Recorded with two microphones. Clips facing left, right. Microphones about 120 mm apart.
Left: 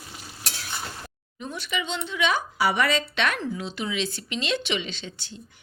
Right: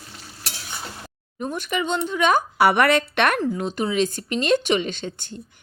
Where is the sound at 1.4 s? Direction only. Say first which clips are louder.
Right 6 dB; 50° right (ahead or behind).